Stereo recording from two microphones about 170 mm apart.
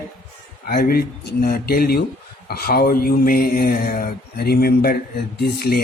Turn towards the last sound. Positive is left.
turn(degrees=70)  # may be behind; listen again after turning